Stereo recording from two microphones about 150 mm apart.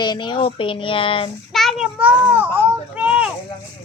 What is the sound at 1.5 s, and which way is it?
Child singing, centre (ahead or behind).